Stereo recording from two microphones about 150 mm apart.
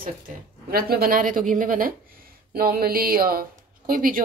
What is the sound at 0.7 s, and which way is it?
A woman's voice, 90° right.